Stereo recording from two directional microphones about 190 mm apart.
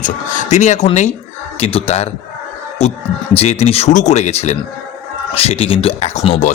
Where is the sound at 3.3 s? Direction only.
35° left (ahead or behind).